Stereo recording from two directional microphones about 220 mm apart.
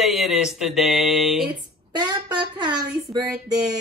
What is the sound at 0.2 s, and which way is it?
Speech, centre (ahead or behind).